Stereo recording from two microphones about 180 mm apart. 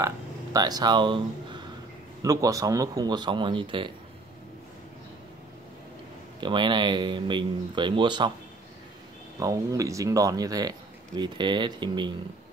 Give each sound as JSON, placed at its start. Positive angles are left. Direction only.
{"t": 0.0, "sound": "speech", "side_deg": -20}
{"t": 6.4, "sound": "speech", "side_deg": -25}
{"t": 9.4, "sound": "speech", "side_deg": -20}